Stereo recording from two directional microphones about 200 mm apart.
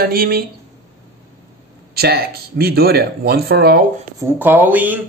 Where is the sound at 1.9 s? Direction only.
50° right (ahead or behind).